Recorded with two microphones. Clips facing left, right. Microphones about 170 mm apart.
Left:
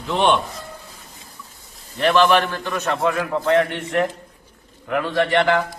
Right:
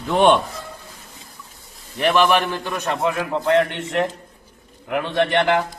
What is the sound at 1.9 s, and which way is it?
A man's voice, 15° right (ahead or behind).